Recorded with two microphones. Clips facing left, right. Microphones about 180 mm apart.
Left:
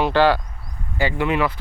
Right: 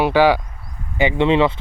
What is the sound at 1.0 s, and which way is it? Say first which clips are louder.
Speech: right 5 dB; 25° right (ahead or behind).